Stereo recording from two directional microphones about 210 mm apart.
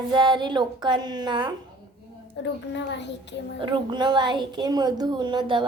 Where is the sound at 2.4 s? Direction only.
60° left (ahead or behind).